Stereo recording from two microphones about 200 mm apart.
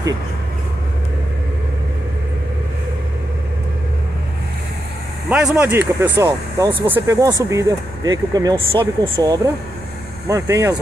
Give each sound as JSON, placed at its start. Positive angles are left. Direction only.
{"t": 5.3, "sound": "speech", "side_deg": -5}